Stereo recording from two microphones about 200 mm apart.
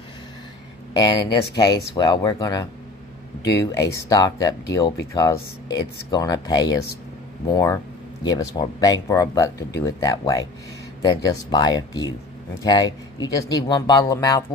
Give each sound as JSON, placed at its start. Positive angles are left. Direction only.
{"t": 0.9, "sound": "speech", "side_deg": 20}
{"t": 3.7, "sound": "speech", "side_deg": 15}